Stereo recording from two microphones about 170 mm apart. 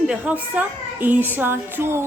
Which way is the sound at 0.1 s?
10° right (ahead or behind).